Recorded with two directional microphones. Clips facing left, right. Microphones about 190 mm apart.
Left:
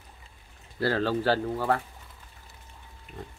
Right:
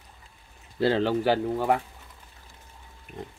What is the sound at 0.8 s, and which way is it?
Speech, 20° right (ahead or behind).